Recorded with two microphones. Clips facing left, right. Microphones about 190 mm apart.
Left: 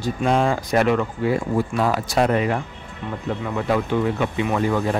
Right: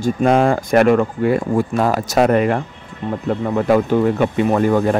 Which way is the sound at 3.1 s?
45° right (ahead or behind).